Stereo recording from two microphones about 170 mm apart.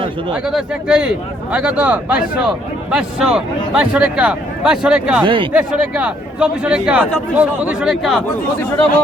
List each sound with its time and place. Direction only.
0.4 s speech: 5° right (ahead or behind)
5.2 s speech: 30° right (ahead or behind)
5.5 s speech: 5° right (ahead or behind)